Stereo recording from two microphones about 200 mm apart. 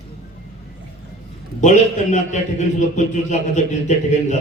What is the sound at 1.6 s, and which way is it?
A man's voice, 40° left (ahead or behind).